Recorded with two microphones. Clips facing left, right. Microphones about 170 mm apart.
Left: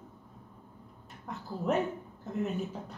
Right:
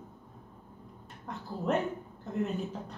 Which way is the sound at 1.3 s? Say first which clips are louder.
Even; centre (ahead or behind).